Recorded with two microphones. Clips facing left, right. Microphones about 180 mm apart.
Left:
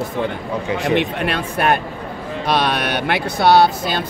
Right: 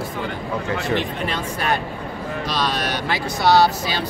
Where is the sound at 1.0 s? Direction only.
65° left (ahead or behind).